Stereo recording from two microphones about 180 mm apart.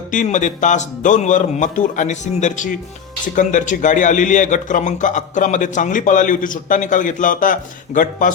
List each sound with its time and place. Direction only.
0.1 s a man's voice: 45° left (ahead or behind)